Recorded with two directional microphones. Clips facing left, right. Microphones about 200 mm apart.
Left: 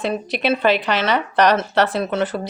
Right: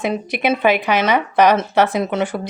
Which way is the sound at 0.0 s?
15° right (ahead or behind).